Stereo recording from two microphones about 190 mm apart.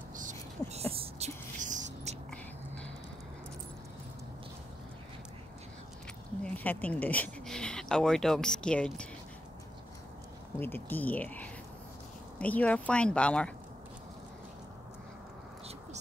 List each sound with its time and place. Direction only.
0.1 s a sound: 40° right (ahead or behind)
6.4 s speech: 10° left (ahead or behind)
10.6 s speech: 10° left (ahead or behind)